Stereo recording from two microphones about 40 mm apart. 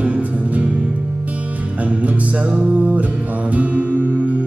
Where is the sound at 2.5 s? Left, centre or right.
Right.